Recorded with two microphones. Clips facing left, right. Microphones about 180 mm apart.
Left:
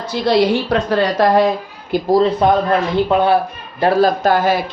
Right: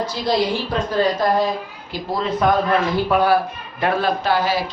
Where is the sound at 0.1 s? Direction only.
70° left (ahead or behind).